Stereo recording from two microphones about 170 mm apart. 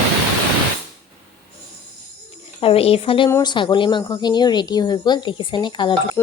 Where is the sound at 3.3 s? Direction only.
20° left (ahead or behind).